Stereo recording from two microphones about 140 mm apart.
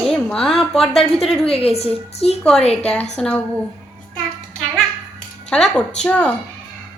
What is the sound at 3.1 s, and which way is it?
Speech, 5° left (ahead or behind).